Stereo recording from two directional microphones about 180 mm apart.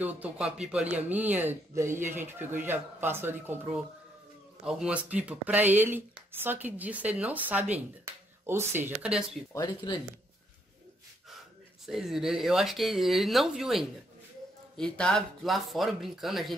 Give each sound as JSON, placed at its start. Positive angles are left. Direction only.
{"t": 0.0, "sound": "speech", "side_deg": -10}
{"t": 9.5, "sound": "speech", "side_deg": 20}
{"t": 11.8, "sound": "speech", "side_deg": 0}